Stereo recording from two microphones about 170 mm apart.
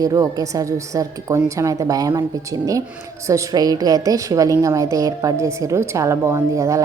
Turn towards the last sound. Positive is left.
turn(degrees=-20)  # may be behind; listen again after turning